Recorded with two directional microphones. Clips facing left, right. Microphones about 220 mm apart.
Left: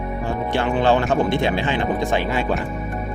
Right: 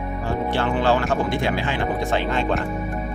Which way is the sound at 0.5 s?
20° left (ahead or behind).